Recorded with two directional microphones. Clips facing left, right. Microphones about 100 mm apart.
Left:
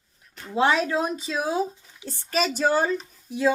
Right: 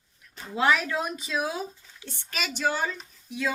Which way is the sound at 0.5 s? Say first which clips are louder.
Left 3 dB; 30° left (ahead or behind).